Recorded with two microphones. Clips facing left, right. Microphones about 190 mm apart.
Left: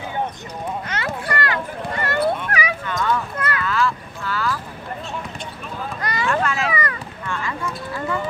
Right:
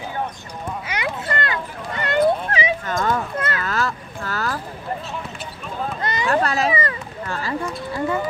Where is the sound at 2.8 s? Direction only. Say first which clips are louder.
Right 1 dB; 45° right (ahead or behind).